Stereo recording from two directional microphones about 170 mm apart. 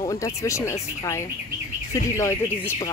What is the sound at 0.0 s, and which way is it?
Speech, 20° left (ahead or behind).